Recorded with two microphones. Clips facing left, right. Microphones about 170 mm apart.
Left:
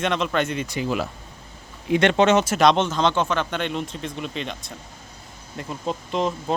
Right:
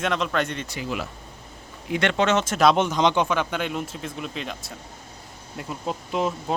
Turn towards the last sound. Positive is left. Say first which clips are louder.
# left 1 dB
turn(degrees=-5)  # may be behind; listen again after turning